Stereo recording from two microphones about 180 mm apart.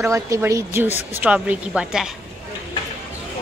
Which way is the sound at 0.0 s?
15° right (ahead or behind).